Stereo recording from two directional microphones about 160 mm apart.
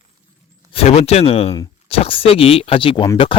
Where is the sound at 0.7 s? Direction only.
40° left (ahead or behind).